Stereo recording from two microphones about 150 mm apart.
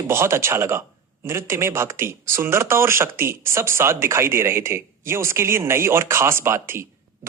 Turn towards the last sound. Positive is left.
turn(degrees=-15)  # may be behind; listen again after turning